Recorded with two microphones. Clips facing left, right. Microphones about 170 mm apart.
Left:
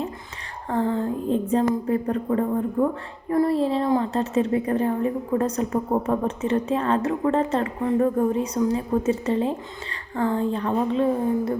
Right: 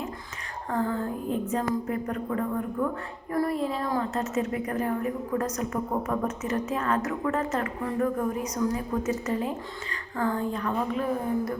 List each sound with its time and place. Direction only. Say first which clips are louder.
0.7 s a woman's voice: left 5 dB; 30° left (ahead or behind)